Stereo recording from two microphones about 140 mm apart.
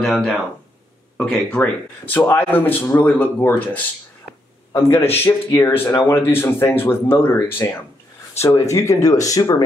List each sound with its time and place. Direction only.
0.0 s speech: centre (ahead or behind); by 9.6 s 25° left (ahead or behind)